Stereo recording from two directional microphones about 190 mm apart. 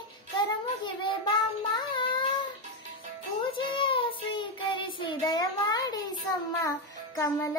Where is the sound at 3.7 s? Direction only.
30° left (ahead or behind).